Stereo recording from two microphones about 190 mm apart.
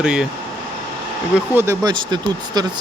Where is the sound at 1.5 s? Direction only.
15° right (ahead or behind).